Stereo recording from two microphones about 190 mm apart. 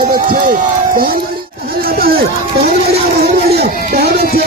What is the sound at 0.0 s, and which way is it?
Speech, 50° right (ahead or behind).